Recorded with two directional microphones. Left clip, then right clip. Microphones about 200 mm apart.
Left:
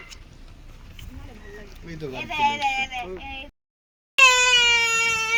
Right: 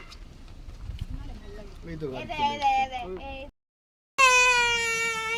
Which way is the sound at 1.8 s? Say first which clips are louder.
Even; 35° left (ahead or behind).